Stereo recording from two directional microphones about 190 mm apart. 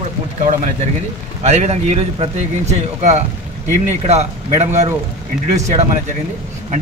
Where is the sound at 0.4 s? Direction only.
35° right (ahead or behind).